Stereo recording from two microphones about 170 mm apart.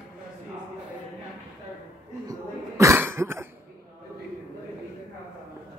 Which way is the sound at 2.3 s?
15° right (ahead or behind).